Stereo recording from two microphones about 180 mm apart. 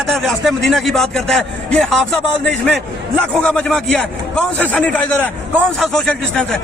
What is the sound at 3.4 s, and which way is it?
A man's voice, 5° left (ahead or behind).